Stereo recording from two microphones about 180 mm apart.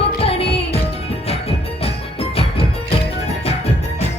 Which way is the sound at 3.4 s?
35° left (ahead or behind).